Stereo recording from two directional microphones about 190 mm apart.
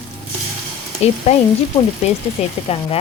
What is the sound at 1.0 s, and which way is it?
Speech, 35° left (ahead or behind).